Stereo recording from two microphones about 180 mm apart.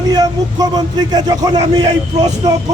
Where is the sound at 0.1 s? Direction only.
20° right (ahead or behind).